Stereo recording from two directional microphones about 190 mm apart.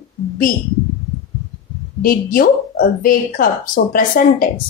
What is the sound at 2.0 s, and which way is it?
Speech, 50° left (ahead or behind).